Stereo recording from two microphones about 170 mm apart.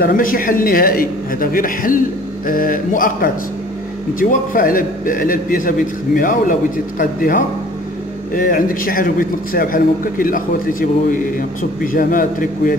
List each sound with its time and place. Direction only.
0.0 s a man's voice: 55° left (ahead or behind)